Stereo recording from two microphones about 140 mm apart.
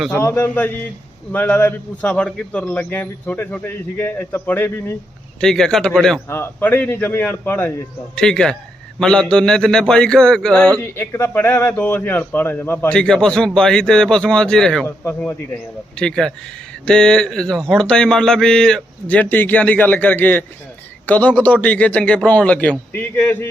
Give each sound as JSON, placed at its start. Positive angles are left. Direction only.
{"t": 0.2, "sound": "a man's voice", "side_deg": 20}
{"t": 6.2, "sound": "a man's voice", "side_deg": 15}
{"t": 10.8, "sound": "a man's voice", "side_deg": 15}
{"t": 14.8, "sound": "a man's voice", "side_deg": 15}
{"t": 16.0, "sound": "a man's voice", "side_deg": 5}